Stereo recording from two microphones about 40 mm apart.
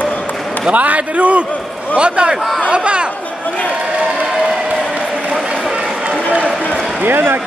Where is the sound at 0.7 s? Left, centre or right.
Right.